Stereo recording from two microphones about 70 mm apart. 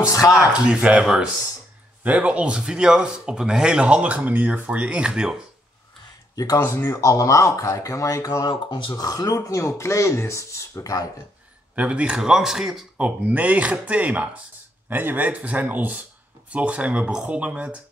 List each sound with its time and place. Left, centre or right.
0.4 s speech: centre
6.3 s speech: left
11.7 s speech: centre
12.9 s speech: centre